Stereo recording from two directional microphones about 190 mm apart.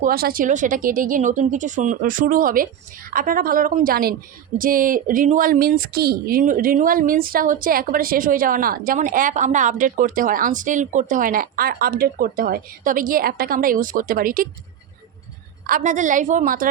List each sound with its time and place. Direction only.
0.0 s a woman's voice: 50° right (ahead or behind)
15.6 s a woman's voice: 45° right (ahead or behind)